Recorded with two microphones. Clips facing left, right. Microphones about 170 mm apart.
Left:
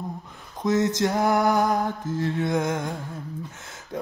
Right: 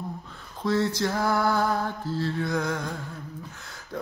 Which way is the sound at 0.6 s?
20° left (ahead or behind).